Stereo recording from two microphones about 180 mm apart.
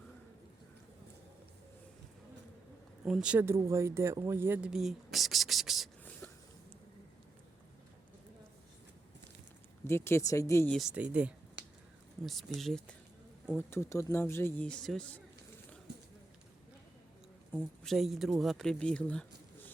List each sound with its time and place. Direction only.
3.0 s speech: 5° right (ahead or behind)
9.8 s speech: 15° left (ahead or behind)
10.7 s speech: centre (ahead or behind)
11.6 s finger snapping: 75° right (ahead or behind)
12.2 s speech: centre (ahead or behind)
17.6 s speech: centre (ahead or behind)